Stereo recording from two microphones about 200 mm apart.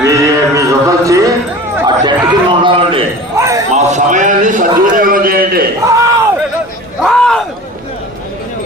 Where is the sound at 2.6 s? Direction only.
25° right (ahead or behind).